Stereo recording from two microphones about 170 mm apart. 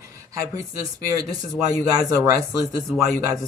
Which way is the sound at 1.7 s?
20° right (ahead or behind).